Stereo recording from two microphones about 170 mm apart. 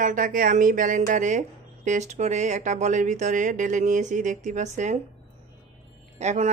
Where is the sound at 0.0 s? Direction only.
50° right (ahead or behind).